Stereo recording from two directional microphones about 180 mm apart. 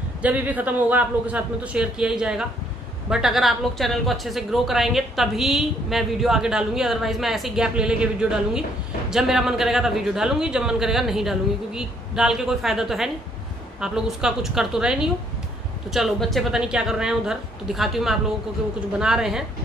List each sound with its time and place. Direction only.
0.2 s a man's voice: 10° right (ahead or behind)